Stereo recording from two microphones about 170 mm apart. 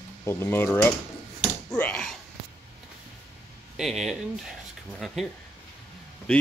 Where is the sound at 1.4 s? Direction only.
5° left (ahead or behind).